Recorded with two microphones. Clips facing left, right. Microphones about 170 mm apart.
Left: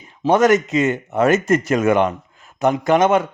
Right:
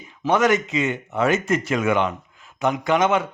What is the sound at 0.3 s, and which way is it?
A man's voice, 40° left (ahead or behind).